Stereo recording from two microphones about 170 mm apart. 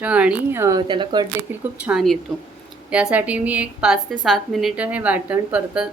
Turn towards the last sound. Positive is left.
turn(degrees=-10)  # may be behind; listen again after turning